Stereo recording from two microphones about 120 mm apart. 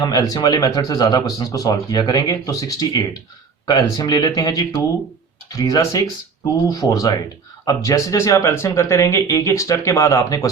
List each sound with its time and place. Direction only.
0.0 s speech: 30° left (ahead or behind)